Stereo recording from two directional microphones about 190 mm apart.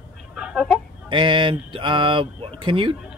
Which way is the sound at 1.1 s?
25° right (ahead or behind).